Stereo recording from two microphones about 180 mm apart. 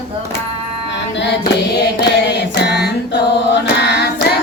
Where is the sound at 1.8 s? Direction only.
70° left (ahead or behind).